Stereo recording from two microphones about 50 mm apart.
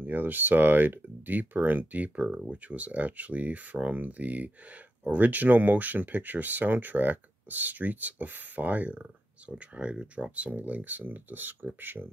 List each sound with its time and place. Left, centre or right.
0.0 s speech: right